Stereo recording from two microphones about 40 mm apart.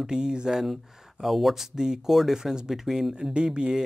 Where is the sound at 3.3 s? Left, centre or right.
Right.